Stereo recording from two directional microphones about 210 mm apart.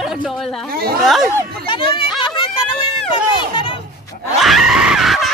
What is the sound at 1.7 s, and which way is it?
Run, 25° left (ahead or behind).